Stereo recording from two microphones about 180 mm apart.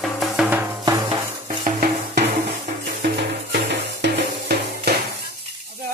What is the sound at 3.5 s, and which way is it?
Music, 65° right (ahead or behind).